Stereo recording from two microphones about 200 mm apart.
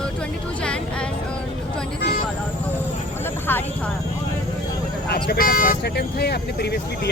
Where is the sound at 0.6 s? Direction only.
5° left (ahead or behind).